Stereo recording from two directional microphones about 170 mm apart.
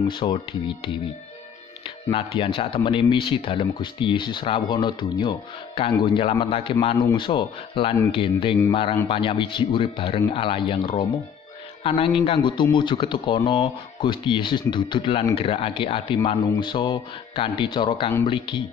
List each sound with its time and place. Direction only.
0.1 s speech: 30° left (ahead or behind)
2.0 s speech: 30° left (ahead or behind)